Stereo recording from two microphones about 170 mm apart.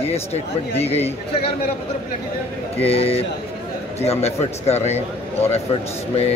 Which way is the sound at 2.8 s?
35° left (ahead or behind).